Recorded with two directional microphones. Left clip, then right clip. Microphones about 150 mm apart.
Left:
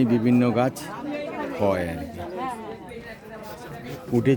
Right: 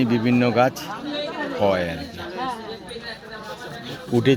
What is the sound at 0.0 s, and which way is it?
Speech, 10° right (ahead or behind).